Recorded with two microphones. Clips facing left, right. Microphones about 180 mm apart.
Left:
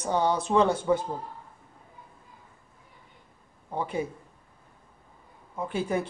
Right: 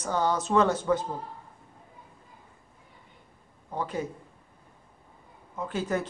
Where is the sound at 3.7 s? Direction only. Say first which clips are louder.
Left 1 dB; 10° left (ahead or behind).